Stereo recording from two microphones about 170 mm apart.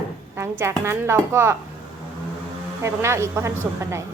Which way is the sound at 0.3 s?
15° right (ahead or behind).